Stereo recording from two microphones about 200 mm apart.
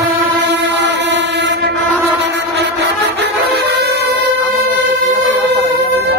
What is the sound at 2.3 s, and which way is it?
Music, 60° right (ahead or behind).